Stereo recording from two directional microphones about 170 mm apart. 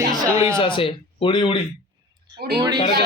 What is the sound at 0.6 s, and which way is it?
Speech, 30° left (ahead or behind).